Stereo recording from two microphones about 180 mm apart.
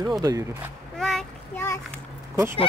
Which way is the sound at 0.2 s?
20° right (ahead or behind).